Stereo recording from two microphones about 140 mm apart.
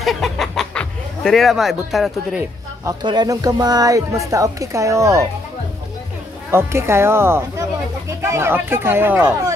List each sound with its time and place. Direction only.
0.0 s speech: centre (ahead or behind)
2.8 s speech: 30° right (ahead or behind)
6.5 s speech: 20° right (ahead or behind)